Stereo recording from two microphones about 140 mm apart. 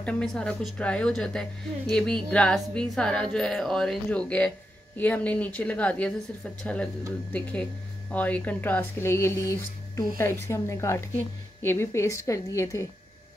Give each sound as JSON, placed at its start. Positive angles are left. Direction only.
{"t": 0.0, "sound": "speech", "side_deg": 5}